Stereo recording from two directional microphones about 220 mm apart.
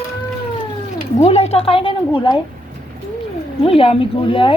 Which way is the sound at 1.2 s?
30° left (ahead or behind).